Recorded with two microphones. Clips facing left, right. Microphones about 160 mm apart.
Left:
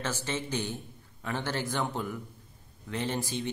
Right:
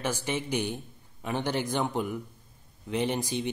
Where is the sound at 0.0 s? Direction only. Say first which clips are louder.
Right 3 dB; 15° right (ahead or behind).